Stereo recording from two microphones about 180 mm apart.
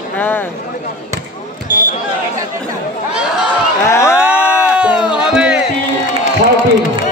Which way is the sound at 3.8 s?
15° left (ahead or behind).